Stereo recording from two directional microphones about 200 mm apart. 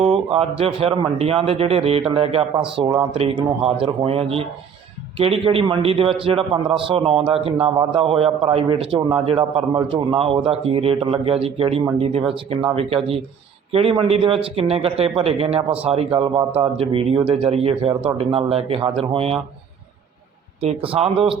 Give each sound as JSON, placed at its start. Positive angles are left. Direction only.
{"t": 0.0, "sound": "a man's voice", "side_deg": -30}
{"t": 13.7, "sound": "a man's voice", "side_deg": -30}
{"t": 20.6, "sound": "a man's voice", "side_deg": -30}